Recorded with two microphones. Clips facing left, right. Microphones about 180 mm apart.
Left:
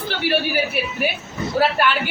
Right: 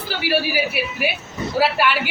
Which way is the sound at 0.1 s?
5° right (ahead or behind).